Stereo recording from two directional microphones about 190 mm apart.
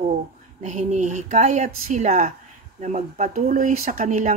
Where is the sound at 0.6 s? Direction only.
40° right (ahead or behind).